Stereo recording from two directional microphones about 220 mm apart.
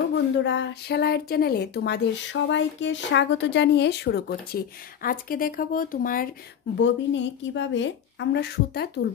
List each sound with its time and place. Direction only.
0.1 s speech: 55° left (ahead or behind)
6.8 s a woman's voice: 55° left (ahead or behind)